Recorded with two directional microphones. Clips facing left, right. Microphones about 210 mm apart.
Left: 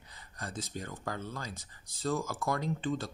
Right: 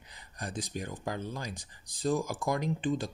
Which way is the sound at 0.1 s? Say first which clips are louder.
Right 3 dB; 15° right (ahead or behind).